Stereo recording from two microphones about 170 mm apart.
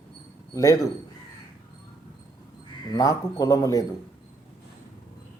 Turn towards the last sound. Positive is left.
turn(degrees=20)  # may be behind; listen again after turning